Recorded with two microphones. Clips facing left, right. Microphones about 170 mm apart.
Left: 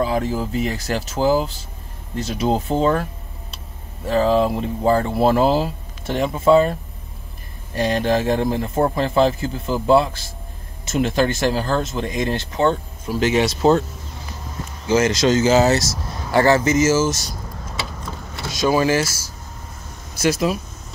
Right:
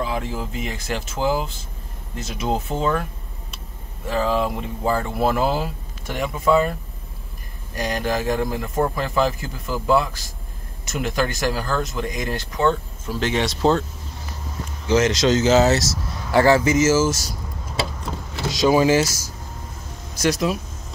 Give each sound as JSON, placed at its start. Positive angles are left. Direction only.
{"t": 0.0, "sound": "speech", "side_deg": 40}
{"t": 14.9, "sound": "speech", "side_deg": 0}
{"t": 18.5, "sound": "speech", "side_deg": -15}
{"t": 20.2, "sound": "speech", "side_deg": 0}